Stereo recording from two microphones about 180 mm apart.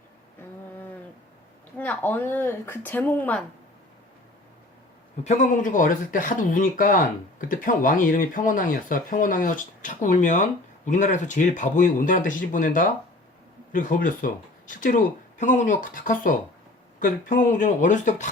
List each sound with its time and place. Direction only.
1.8 s speech: 10° left (ahead or behind)
5.2 s speech: 40° left (ahead or behind)